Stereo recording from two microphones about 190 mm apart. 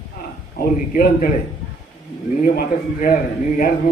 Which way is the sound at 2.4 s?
45° left (ahead or behind).